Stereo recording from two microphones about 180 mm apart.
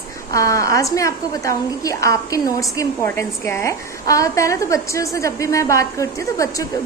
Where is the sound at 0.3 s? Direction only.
15° left (ahead or behind).